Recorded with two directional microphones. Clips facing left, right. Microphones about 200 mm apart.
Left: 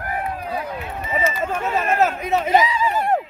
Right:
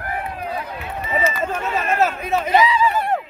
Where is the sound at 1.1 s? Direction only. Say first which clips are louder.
Right 1 dB; 15° left (ahead or behind).